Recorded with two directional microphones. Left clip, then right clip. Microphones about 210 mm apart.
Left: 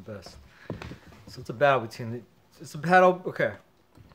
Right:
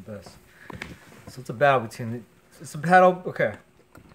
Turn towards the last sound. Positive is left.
turn(degrees=5)  # may be behind; listen again after turning